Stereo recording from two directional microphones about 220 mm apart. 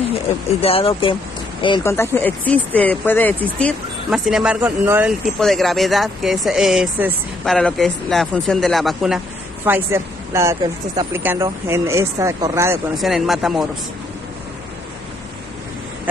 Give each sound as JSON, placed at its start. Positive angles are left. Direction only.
{"t": 0.6, "sound": "speech", "side_deg": 25}
{"t": 12.9, "sound": "speech", "side_deg": 0}